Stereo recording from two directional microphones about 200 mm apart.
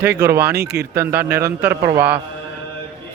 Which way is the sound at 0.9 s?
10° right (ahead or behind).